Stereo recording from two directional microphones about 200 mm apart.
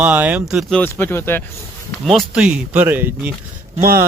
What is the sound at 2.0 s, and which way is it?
Speech, centre (ahead or behind).